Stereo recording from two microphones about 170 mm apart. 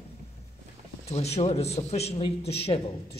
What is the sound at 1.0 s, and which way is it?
A man's voice, 40° left (ahead or behind).